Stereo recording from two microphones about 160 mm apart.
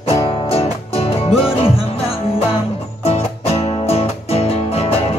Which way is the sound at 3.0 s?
40° left (ahead or behind).